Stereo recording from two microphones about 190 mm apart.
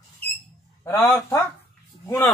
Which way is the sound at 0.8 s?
15° left (ahead or behind).